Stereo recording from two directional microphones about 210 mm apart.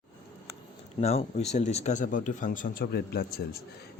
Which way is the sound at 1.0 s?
30° left (ahead or behind).